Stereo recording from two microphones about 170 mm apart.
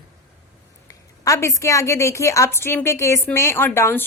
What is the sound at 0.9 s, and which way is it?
A woman's voice, 20° left (ahead or behind).